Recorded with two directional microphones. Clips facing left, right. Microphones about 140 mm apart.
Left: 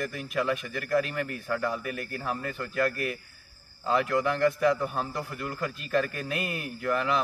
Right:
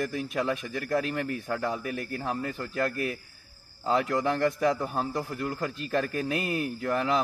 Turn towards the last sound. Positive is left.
turn(degrees=-25)  # may be behind; listen again after turning